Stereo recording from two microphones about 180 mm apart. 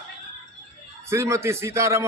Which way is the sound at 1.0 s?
15° right (ahead or behind).